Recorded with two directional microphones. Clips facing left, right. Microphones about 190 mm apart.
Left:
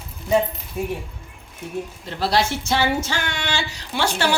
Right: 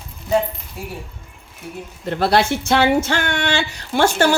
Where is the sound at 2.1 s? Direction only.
55° right (ahead or behind).